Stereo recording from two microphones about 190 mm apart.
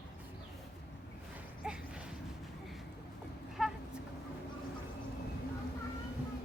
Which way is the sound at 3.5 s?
Centre (ahead or behind).